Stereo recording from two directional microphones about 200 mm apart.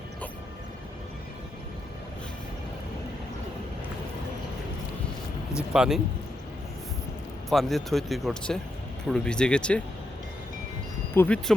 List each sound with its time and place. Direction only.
5.5 s speech: 5° right (ahead or behind)
7.5 s speech: centre (ahead or behind)
11.1 s speech: 10° left (ahead or behind)